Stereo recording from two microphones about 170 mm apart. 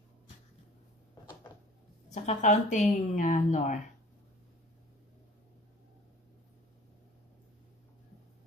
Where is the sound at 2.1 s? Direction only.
45° left (ahead or behind).